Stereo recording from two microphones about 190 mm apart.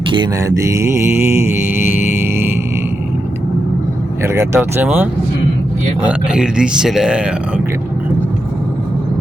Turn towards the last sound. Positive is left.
turn(degrees=-5)  # may be behind; listen again after turning